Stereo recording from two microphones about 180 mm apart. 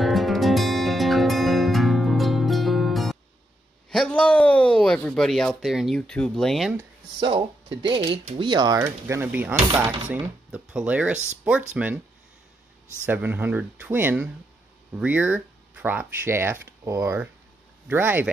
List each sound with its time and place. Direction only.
0.0 s music: centre (ahead or behind)
3.9 s speech: 5° left (ahead or behind)
7.2 s speech: 25° right (ahead or behind); by 12.0 s 10° right (ahead or behind)
13.0 s speech: 10° right (ahead or behind)